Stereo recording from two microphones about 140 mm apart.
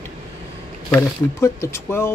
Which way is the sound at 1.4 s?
20° left (ahead or behind).